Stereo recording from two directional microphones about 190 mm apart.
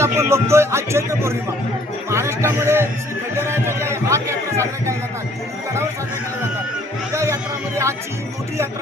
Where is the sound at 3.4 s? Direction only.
15° right (ahead or behind).